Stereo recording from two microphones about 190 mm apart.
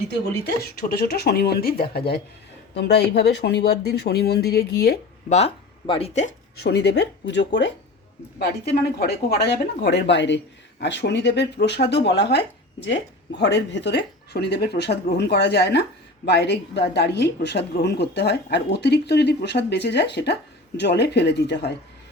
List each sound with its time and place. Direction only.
0.6 s speech: 55° left (ahead or behind)
5.3 s speech: 30° left (ahead or behind)
6.6 s speech: 60° left (ahead or behind)
8.4 s speech: 55° left (ahead or behind)